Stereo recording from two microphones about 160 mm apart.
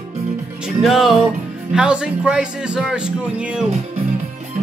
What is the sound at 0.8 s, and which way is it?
Speech, centre (ahead or behind).